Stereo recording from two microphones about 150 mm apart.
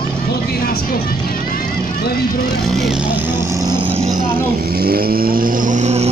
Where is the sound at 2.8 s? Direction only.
5° right (ahead or behind).